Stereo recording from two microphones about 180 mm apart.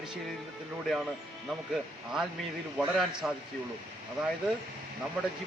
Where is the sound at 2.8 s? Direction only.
Centre (ahead or behind).